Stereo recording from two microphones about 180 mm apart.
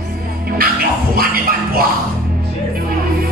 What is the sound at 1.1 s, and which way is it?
Music, 55° right (ahead or behind).